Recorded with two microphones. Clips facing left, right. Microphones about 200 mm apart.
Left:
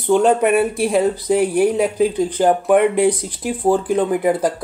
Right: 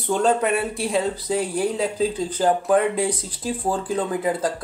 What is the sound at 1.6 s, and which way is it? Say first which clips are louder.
Speech: left 6 dB; 15° left (ahead or behind).